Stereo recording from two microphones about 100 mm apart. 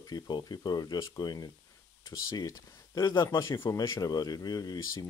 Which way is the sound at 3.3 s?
25° left (ahead or behind).